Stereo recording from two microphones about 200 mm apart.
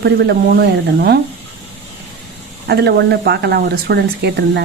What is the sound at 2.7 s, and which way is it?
Speech, 55° right (ahead or behind).